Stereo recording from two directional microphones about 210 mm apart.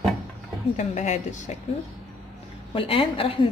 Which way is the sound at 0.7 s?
35° left (ahead or behind).